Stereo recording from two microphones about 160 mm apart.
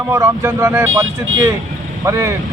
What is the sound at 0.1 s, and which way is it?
Speech, 20° right (ahead or behind).